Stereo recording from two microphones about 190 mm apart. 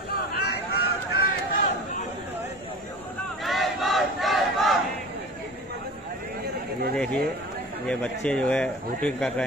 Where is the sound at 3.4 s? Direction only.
Centre (ahead or behind).